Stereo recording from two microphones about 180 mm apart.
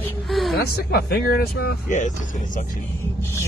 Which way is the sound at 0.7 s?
60° left (ahead or behind).